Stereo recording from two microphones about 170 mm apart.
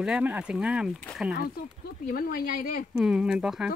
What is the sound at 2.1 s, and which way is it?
Speech, 60° left (ahead or behind).